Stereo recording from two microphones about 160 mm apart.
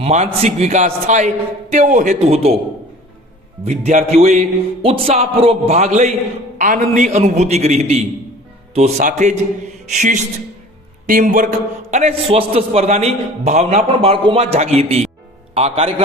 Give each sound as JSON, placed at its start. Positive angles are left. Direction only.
{"t": 0.0, "sound": "a man's voice", "side_deg": -45}
{"t": 3.6, "sound": "a man's voice", "side_deg": -45}
{"t": 6.6, "sound": "a man's voice", "side_deg": -60}
{"t": 11.9, "sound": "a man's voice", "side_deg": -45}